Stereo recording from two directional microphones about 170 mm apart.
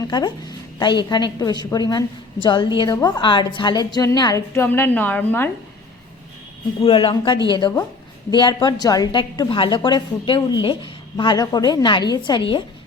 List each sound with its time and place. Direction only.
0.1 s a woman's voice: 25° left (ahead or behind)
6.8 s a woman's voice: 30° left (ahead or behind)